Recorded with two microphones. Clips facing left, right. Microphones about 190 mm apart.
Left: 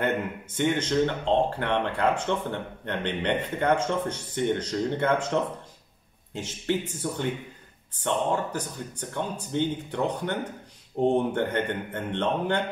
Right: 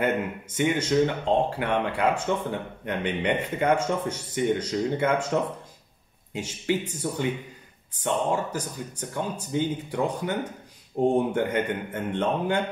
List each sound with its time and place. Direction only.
0.6 s speech: 10° right (ahead or behind)